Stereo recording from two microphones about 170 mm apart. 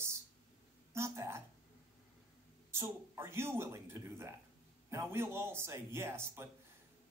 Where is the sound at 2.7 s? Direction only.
15° right (ahead or behind).